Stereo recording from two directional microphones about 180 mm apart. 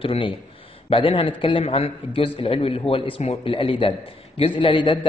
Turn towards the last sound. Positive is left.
turn(degrees=30)  # may be behind; listen again after turning